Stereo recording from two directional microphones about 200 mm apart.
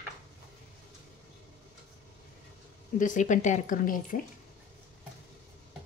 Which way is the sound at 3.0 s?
40° left (ahead or behind).